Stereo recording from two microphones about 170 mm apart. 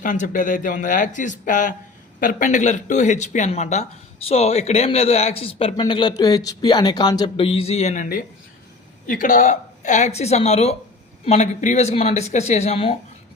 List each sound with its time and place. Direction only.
0.0 s speech: 50° left (ahead or behind)